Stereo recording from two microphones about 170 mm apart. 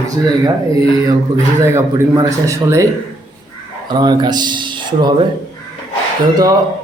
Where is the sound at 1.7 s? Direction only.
20° right (ahead or behind).